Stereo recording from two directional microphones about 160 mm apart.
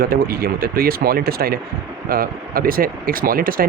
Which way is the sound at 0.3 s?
70° right (ahead or behind).